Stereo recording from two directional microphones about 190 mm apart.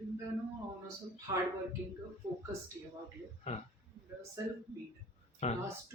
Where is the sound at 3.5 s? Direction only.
35° left (ahead or behind).